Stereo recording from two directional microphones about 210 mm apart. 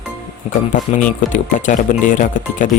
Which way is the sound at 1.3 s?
35° left (ahead or behind).